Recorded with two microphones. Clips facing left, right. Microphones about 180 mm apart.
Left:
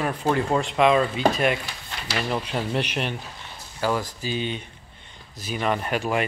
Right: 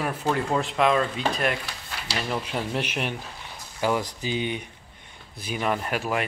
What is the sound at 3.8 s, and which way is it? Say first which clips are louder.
Speech: even; 20° right (ahead or behind).